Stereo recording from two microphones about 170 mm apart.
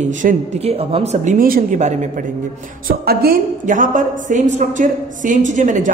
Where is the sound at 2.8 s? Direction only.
65° right (ahead or behind); by 5.9 s 50° right (ahead or behind).